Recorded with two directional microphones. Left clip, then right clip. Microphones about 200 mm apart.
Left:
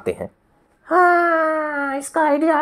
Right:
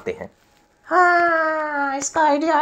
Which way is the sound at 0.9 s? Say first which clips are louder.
Left 1 dB; 55° left (ahead or behind).